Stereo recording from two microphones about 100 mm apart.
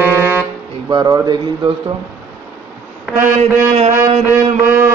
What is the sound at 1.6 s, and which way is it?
Speech, 60° right (ahead or behind).